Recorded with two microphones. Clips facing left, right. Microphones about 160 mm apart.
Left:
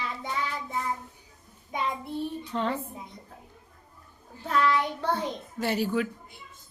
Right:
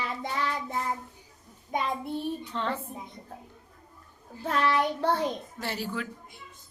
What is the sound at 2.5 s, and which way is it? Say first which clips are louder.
Speech: left 6 dB; 40° left (ahead or behind).